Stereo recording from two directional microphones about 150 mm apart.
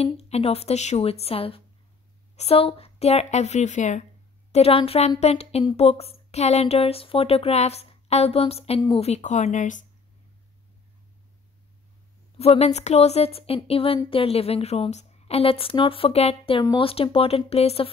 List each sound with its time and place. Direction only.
0.0 s speech: 45° left (ahead or behind)
4.5 s speech: 40° left (ahead or behind)
12.4 s a woman's voice: 45° left (ahead or behind)